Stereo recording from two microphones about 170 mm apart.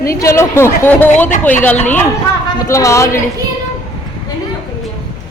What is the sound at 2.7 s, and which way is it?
Speech, 20° left (ahead or behind).